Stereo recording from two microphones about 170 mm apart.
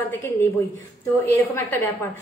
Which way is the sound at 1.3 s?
10° left (ahead or behind).